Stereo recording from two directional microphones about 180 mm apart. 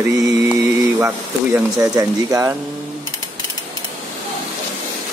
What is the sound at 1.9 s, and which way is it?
Speech, 20° right (ahead or behind).